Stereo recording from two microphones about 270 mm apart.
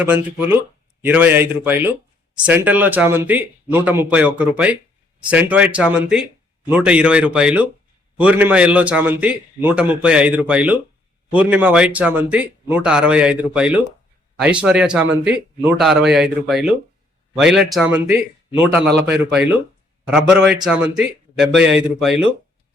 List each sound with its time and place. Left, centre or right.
0.0 s a man's voice: centre